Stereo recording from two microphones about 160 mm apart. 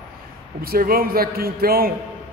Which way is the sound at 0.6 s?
65° right (ahead or behind).